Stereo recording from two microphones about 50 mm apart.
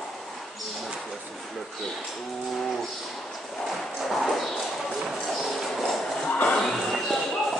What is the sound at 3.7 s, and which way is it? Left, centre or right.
Clip-clop, centre.